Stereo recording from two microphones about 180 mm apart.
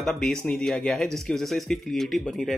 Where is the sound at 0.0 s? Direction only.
Centre (ahead or behind).